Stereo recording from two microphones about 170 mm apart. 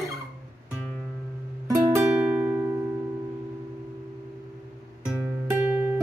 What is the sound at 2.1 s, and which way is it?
Music, 10° right (ahead or behind).